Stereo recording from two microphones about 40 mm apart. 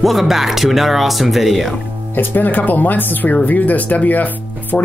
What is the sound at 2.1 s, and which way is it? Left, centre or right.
Speech, left.